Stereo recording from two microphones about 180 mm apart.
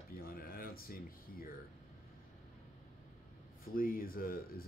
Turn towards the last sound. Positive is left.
turn(degrees=55)  # may be behind; listen again after turning